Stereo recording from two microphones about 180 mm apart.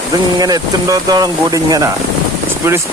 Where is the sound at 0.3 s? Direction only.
20° right (ahead or behind).